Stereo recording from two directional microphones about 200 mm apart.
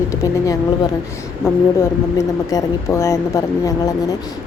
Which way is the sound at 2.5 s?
15° left (ahead or behind).